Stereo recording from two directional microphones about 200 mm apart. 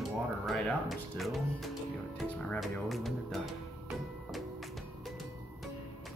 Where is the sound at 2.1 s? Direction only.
5° left (ahead or behind).